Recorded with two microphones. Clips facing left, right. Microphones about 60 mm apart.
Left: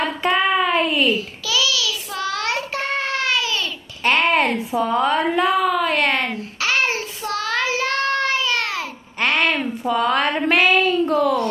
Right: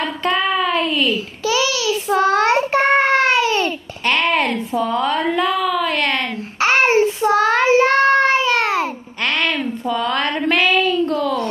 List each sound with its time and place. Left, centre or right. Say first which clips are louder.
0.0 s child singing: even; centre
1.4 s child singing: right 3 dB; right
4.0 s a sound: even; centre
5.9 s speech: even; centre
6.6 s child singing: right 8 dB; right
9.2 s a sound: left 1 dB; centre